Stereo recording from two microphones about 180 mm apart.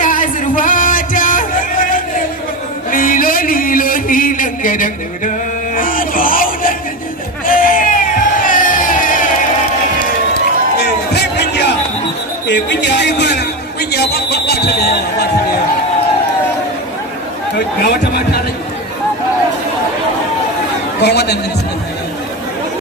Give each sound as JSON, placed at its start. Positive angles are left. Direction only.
{"t": 0.0, "sound": "music", "side_deg": 50}
{"t": 2.9, "sound": "a sound", "side_deg": 50}
{"t": 5.7, "sound": "music", "side_deg": 50}
{"t": 7.4, "sound": "a sound", "side_deg": 50}
{"t": 8.4, "sound": "crowd", "side_deg": 50}
{"t": 10.8, "sound": "music", "side_deg": 65}
{"t": 12.5, "sound": "a sound", "side_deg": 75}
{"t": 13.9, "sound": "chatter", "side_deg": 65}
{"t": 17.8, "sound": "speech", "side_deg": 60}
{"t": 21.0, "sound": "speech", "side_deg": 65}